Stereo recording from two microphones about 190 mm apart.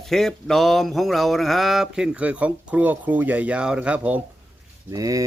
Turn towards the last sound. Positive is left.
turn(degrees=-20)  # may be behind; listen again after turning